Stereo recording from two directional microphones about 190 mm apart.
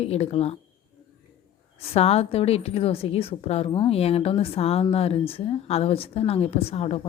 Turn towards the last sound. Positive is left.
turn(degrees=30)  # may be behind; listen again after turning